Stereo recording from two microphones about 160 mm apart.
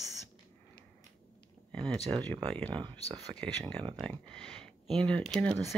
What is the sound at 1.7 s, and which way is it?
Speech, 5° left (ahead or behind).